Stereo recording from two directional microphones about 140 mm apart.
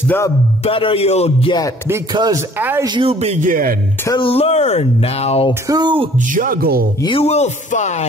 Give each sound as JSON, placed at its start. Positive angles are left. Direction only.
{"t": 0.7, "sound": "speech", "side_deg": 40}
{"t": 2.1, "sound": "speech", "side_deg": -30}
{"t": 3.1, "sound": "speech", "side_deg": -45}
{"t": 3.4, "sound": "speech", "side_deg": -90}
{"t": 4.2, "sound": "speech", "side_deg": 45}
{"t": 5.5, "sound": "speech", "side_deg": -30}
{"t": 6.1, "sound": "speech", "side_deg": -75}
{"t": 7.2, "sound": "speech", "side_deg": 50}